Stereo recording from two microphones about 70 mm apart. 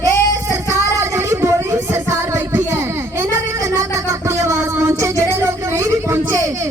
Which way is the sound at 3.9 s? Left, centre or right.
Right.